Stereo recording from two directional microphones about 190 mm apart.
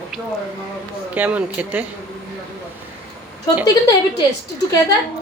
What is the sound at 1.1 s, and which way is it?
Speech, 5° right (ahead or behind).